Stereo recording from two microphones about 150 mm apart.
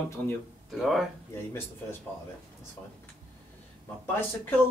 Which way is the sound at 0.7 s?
Centre (ahead or behind).